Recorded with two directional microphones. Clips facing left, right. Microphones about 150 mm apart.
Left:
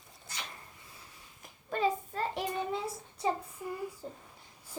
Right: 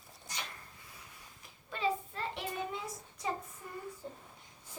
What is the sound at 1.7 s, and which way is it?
Child singing, 45° left (ahead or behind).